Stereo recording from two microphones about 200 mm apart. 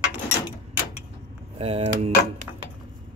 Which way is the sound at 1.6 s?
30° right (ahead or behind).